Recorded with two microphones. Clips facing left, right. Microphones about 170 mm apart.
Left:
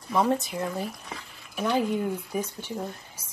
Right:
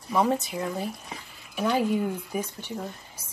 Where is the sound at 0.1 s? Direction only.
Centre (ahead or behind).